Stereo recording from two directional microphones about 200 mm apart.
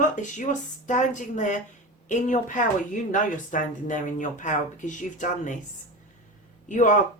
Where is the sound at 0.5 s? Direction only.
40° left (ahead or behind).